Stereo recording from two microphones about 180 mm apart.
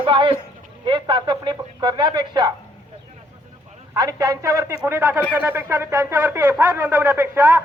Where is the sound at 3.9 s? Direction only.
20° right (ahead or behind).